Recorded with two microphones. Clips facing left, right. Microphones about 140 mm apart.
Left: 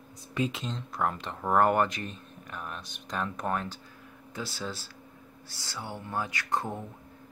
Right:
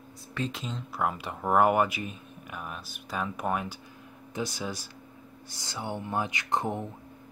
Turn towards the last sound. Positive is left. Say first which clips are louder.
# right 2 dB
turn(degrees=-20)  # may be behind; listen again after turning